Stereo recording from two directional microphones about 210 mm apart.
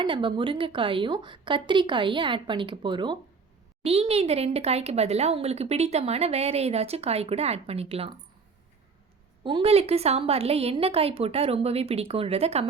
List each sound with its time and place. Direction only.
0.0 s speech: 25° right (ahead or behind)
9.4 s speech: 25° right (ahead or behind)